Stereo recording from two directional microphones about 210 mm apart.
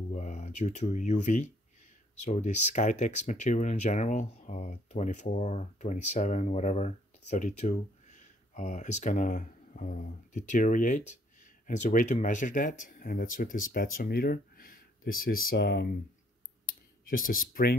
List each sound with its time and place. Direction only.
0.1 s speech: 35° left (ahead or behind)
16.6 s clicking: 40° left (ahead or behind)